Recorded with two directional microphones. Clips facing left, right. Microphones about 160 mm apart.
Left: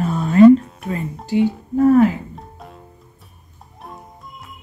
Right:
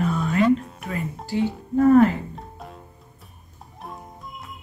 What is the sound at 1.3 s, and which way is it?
Speech, 15° left (ahead or behind).